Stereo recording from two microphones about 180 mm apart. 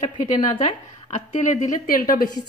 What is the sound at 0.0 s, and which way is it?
A woman's voice, 45° left (ahead or behind).